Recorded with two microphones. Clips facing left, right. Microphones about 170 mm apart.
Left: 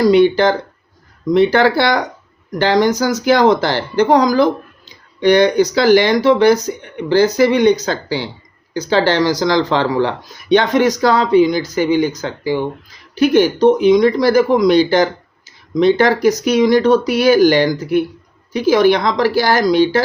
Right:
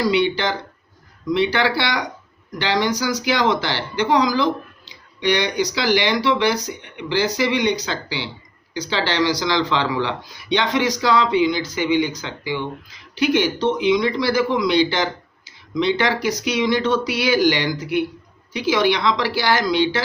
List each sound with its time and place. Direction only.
0.0 s speech: 45° left (ahead or behind)